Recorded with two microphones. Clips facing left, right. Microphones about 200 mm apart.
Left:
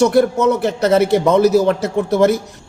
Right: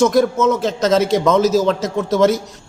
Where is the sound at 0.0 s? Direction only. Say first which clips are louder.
Left 1 dB; 15° left (ahead or behind).